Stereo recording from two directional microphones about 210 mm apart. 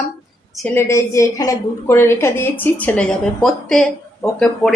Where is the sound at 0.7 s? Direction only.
15° left (ahead or behind).